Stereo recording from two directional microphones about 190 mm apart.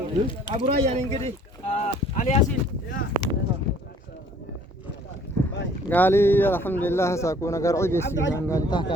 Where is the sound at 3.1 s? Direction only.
40° right (ahead or behind).